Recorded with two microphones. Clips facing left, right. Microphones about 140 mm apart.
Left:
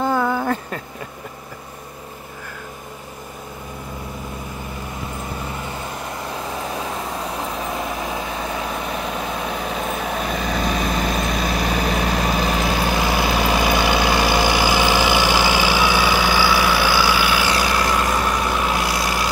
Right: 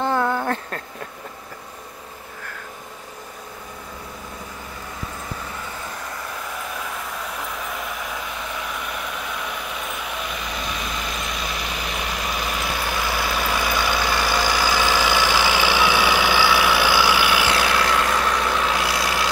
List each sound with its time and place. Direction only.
0.0 s a sound: 5° left (ahead or behind)
5.4 s vehicle: 20° left (ahead or behind)
14.4 s vehicle: 65° left (ahead or behind)
14.7 s vehicle: 15° left (ahead or behind); by 19.2 s centre (ahead or behind)